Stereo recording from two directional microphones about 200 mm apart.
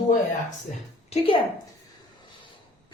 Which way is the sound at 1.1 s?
30° left (ahead or behind).